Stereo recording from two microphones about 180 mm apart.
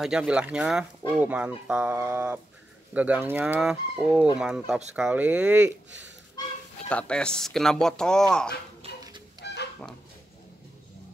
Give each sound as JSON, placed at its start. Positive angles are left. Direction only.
{"t": 0.0, "sound": "speech", "side_deg": -5}
{"t": 2.9, "sound": "chicken", "side_deg": -10}
{"t": 4.4, "sound": "speech", "side_deg": -5}
{"t": 4.9, "sound": "chicken", "side_deg": -5}
{"t": 6.9, "sound": "speech", "side_deg": 5}
{"t": 9.4, "sound": "chicken", "side_deg": 70}